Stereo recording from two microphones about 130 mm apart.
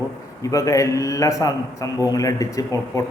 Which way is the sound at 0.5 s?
25° left (ahead or behind).